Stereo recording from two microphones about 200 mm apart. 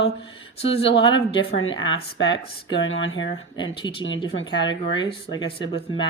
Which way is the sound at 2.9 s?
75° left (ahead or behind).